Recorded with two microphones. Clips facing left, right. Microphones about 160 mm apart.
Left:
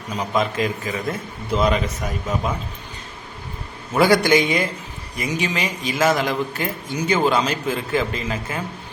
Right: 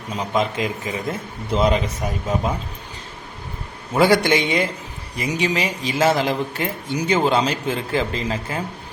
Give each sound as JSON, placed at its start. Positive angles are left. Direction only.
{"t": 0.2, "sound": "a man's voice", "side_deg": -25}
{"t": 3.9, "sound": "a man's voice", "side_deg": -30}